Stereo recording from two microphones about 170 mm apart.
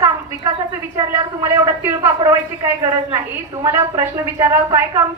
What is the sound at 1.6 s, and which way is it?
A woman's voice, 20° right (ahead or behind).